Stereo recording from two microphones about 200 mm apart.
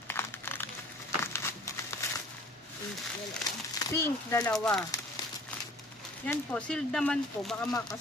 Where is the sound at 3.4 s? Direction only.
20° left (ahead or behind).